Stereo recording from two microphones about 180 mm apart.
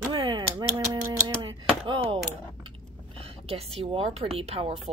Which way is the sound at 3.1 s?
35° right (ahead or behind).